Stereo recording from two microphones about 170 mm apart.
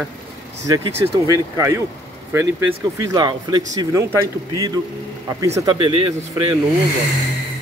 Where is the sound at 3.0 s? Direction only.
25° right (ahead or behind).